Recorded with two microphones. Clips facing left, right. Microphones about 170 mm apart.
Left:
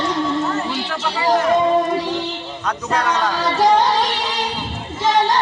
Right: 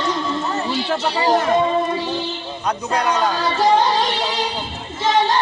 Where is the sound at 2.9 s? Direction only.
10° right (ahead or behind).